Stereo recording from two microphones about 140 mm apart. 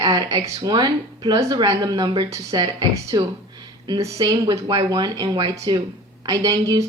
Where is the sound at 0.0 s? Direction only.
30° right (ahead or behind).